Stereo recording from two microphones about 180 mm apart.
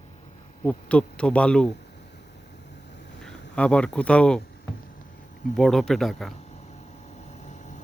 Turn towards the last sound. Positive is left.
turn(degrees=40)  # may be behind; listen again after turning